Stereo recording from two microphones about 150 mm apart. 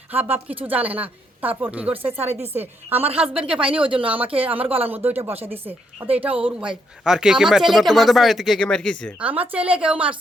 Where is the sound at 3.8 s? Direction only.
35° right (ahead or behind).